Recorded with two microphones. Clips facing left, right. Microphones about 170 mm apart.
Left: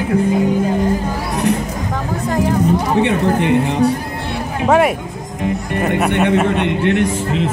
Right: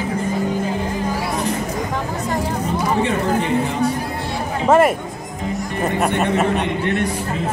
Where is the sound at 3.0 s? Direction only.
65° left (ahead or behind).